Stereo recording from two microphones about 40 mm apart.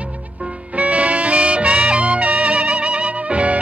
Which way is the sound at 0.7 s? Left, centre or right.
Right.